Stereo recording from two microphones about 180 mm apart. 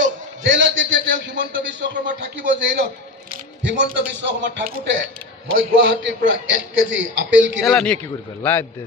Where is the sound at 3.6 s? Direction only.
75° right (ahead or behind).